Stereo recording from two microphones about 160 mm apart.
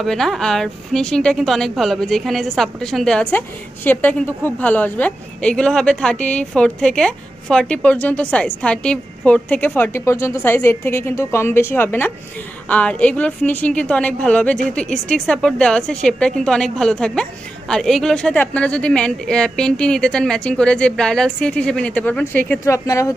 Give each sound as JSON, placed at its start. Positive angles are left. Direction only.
{"t": 0.0, "sound": "a woman's voice", "side_deg": 0}